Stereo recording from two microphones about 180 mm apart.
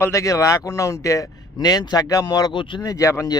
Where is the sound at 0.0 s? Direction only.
15° left (ahead or behind).